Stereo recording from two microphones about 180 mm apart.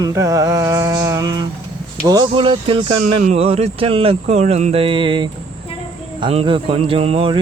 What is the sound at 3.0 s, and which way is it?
Speech, 40° right (ahead or behind).